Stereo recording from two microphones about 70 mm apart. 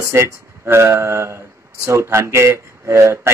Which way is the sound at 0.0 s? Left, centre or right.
Right.